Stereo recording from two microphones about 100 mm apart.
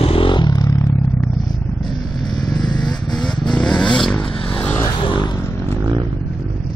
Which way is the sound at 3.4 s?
5° left (ahead or behind).